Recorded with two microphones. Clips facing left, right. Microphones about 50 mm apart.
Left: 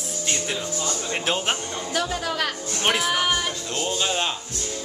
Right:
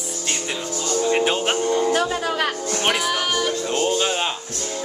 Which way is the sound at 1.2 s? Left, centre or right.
Centre.